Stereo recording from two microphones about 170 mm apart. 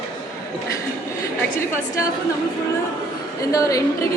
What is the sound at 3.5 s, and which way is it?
Speech, 20° left (ahead or behind).